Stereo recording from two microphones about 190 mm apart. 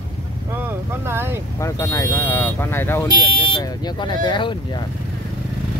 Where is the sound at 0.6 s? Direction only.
10° right (ahead or behind).